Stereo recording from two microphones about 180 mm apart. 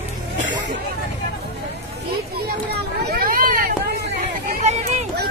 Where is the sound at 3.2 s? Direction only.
50° right (ahead or behind).